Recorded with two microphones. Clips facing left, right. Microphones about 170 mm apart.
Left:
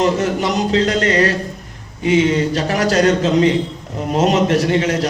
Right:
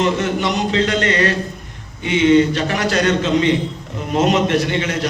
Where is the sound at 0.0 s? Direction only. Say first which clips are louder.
Left 2 dB; 35° left (ahead or behind).